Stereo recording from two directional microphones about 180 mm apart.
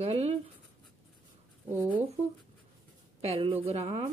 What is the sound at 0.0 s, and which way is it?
Writing, 35° right (ahead or behind).